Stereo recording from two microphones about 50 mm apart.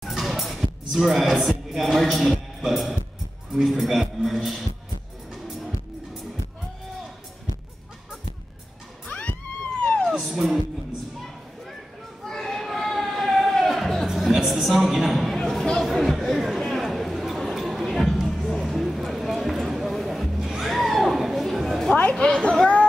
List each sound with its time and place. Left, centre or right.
0.1 s music: centre
9.0 s music: left
10.2 s music: centre
12.3 s a sound: centre
15.8 s chatter: centre
22.2 s a sound: centre